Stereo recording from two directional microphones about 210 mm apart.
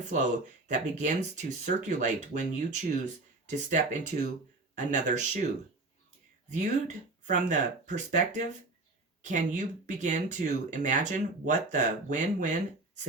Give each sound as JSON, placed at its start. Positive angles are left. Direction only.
{"t": 0.7, "sound": "speech", "side_deg": -35}
{"t": 6.5, "sound": "speech", "side_deg": -35}